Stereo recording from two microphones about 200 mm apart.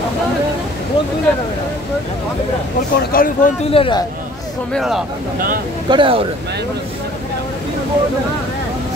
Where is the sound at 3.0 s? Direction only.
45° left (ahead or behind).